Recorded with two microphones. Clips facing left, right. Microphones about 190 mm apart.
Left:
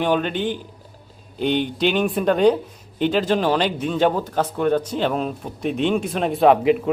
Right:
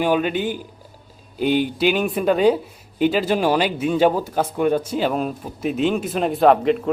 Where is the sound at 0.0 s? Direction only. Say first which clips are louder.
Right 1 dB; 5° right (ahead or behind).